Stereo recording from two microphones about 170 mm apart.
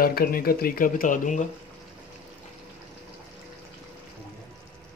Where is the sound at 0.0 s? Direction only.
60° left (ahead or behind).